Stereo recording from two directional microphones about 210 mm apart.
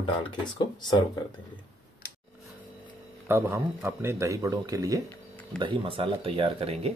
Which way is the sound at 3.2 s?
10° right (ahead or behind).